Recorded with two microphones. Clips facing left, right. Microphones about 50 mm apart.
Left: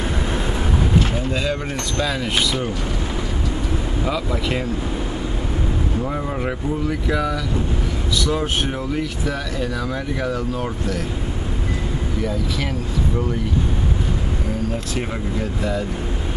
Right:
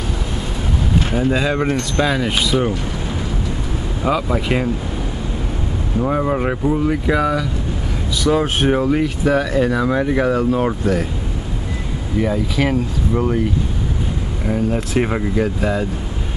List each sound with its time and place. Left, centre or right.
1.1 s speech: right
2.1 s speech: centre
4.0 s speech: right
6.0 s speech: right
12.2 s speech: right
14.7 s speech: right